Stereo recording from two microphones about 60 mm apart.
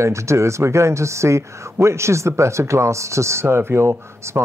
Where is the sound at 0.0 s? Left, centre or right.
Right.